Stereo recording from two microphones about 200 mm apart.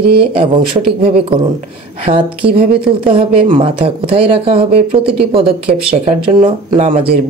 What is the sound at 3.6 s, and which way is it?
Speech, 25° right (ahead or behind).